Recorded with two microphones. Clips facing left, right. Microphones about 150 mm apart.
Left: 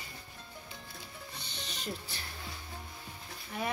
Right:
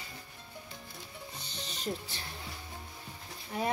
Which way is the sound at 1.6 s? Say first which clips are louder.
Right 4 dB; 35° right (ahead or behind).